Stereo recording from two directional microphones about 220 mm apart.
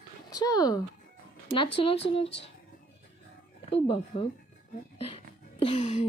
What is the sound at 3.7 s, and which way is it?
Speech, 25° left (ahead or behind).